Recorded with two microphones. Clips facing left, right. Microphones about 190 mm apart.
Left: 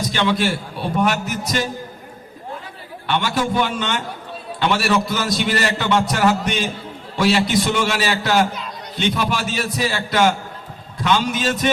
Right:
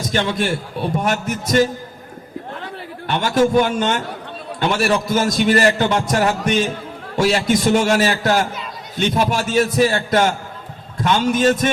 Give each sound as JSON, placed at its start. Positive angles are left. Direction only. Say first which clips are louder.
{"t": 0.1, "sound": "a man's voice", "louder": "right 1 dB", "side_deg": -45}
{"t": 3.1, "sound": "a man's voice", "louder": "right 5 dB", "side_deg": -45}